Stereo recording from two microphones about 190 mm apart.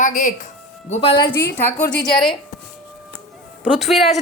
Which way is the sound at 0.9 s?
30° left (ahead or behind).